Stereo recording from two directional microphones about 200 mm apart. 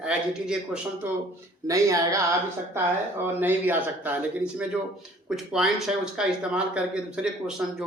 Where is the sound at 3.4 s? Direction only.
10° right (ahead or behind).